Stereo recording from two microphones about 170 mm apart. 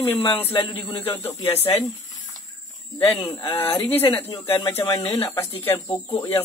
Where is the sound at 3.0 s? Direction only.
15° left (ahead or behind).